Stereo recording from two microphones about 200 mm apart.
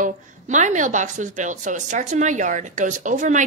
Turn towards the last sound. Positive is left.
turn(degrees=-40)  # may be behind; listen again after turning